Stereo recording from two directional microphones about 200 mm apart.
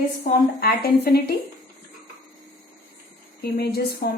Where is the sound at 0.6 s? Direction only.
50° left (ahead or behind).